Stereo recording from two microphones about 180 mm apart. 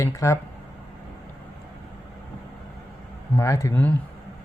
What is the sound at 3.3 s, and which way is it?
Speech, 15° left (ahead or behind).